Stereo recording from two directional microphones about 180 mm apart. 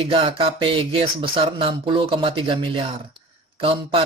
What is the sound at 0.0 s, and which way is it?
Speech, 30° right (ahead or behind).